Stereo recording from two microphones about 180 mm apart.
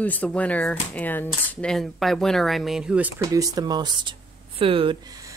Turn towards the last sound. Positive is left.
turn(degrees=-20)  # may be behind; listen again after turning